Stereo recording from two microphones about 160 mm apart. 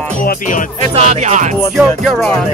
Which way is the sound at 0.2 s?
60° left (ahead or behind).